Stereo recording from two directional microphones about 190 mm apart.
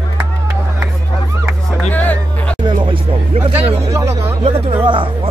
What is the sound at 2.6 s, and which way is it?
Music, 25° right (ahead or behind).